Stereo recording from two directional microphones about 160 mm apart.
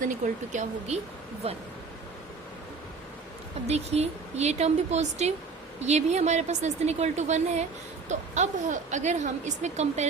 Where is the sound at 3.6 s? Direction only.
40° right (ahead or behind).